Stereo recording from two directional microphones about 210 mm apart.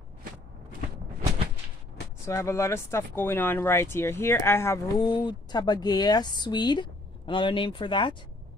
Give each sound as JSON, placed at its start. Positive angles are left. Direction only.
{"t": 2.2, "sound": "speech", "side_deg": 15}